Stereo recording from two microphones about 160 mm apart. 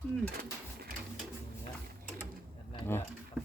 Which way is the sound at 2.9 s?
15° left (ahead or behind).